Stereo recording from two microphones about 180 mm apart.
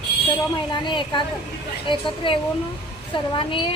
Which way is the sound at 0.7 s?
25° left (ahead or behind).